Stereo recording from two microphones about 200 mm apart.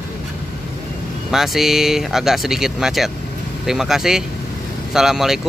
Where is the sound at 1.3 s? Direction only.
Centre (ahead or behind).